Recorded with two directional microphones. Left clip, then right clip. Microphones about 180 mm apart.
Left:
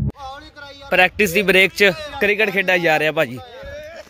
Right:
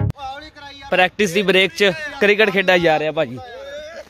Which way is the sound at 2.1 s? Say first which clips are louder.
Right 2 dB; 25° right (ahead or behind).